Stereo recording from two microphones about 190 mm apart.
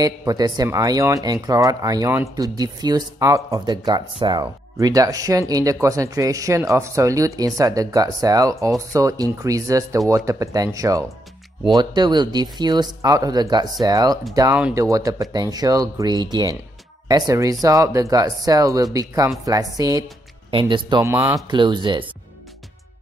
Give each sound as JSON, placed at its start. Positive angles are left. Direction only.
{"t": 0.0, "sound": "speech", "side_deg": -20}
{"t": 21.1, "sound": "speech", "side_deg": -10}
{"t": 21.5, "sound": "speech", "side_deg": -25}